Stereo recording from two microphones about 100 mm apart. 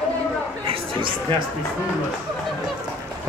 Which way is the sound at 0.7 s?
60° right (ahead or behind).